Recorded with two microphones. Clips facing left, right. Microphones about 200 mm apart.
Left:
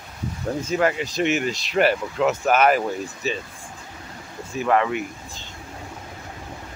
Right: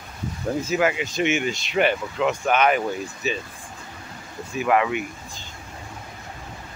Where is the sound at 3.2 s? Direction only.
35° left (ahead or behind).